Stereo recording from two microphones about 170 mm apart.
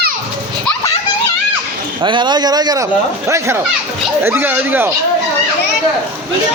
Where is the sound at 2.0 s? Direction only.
25° right (ahead or behind); by 4.9 s 10° right (ahead or behind).